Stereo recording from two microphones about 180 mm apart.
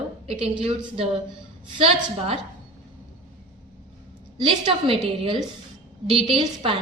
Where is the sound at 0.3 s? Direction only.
35° right (ahead or behind).